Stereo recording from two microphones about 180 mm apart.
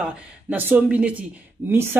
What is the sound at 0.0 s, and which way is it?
A man's voice, 10° right (ahead or behind).